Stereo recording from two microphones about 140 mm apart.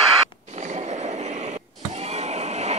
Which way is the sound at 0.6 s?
55° right (ahead or behind).